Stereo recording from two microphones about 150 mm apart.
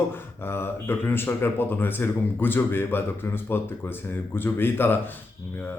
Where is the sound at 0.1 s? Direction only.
15° left (ahead or behind).